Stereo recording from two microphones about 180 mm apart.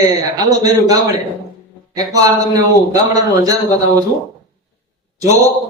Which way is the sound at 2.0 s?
20° right (ahead or behind).